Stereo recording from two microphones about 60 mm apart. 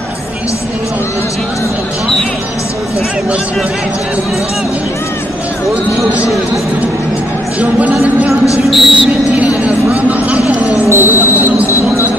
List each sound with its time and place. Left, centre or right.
7.8 s a woman's voice: right
8.6 s speech: centre
10.9 s speech: right
11.5 s train: left